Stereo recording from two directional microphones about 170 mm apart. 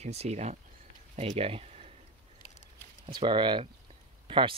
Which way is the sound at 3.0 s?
30° right (ahead or behind).